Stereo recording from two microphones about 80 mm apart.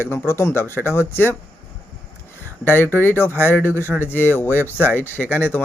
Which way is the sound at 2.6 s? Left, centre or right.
Left.